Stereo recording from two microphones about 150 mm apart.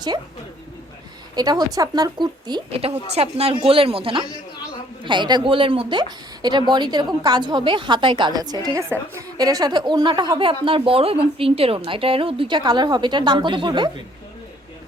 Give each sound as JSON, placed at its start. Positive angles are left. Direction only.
{"t": 1.4, "sound": "a woman's voice", "side_deg": -25}